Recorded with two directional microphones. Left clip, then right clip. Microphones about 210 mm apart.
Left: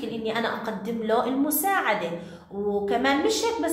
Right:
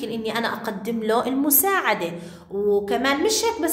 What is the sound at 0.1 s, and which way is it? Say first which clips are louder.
A woman's voice: right 1 dB; 45° right (ahead or behind).